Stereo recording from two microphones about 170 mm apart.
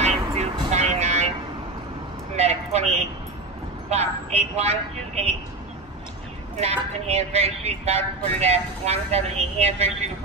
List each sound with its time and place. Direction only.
0.3 s vehicle: 35° right (ahead or behind)
2.3 s a sound: 40° right (ahead or behind)
3.9 s a woman's voice: 40° right (ahead or behind)
6.6 s speech: 40° right (ahead or behind)